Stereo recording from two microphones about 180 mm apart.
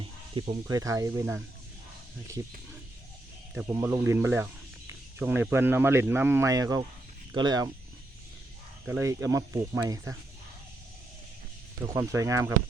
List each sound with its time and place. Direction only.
0.4 s speech: 30° right (ahead or behind)
0.7 s speech: 20° right (ahead or behind)
3.5 s speech: 15° right (ahead or behind)
8.9 s speech: 15° right (ahead or behind)
11.9 s speech: 15° right (ahead or behind)